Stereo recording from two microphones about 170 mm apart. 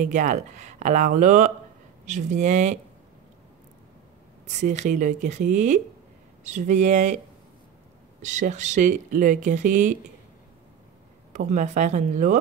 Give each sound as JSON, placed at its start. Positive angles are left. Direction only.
{"t": 0.0, "sound": "speech", "side_deg": -45}
{"t": 4.5, "sound": "speech", "side_deg": -45}
{"t": 8.2, "sound": "speech", "side_deg": -45}
{"t": 11.3, "sound": "speech", "side_deg": -45}